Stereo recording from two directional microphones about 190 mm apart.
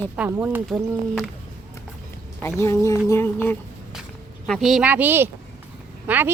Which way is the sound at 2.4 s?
15° left (ahead or behind).